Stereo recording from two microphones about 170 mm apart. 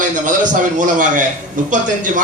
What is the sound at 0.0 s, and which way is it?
A man's voice, 50° right (ahead or behind).